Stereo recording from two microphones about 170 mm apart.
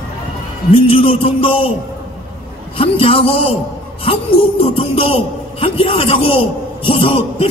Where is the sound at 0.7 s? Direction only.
30° left (ahead or behind).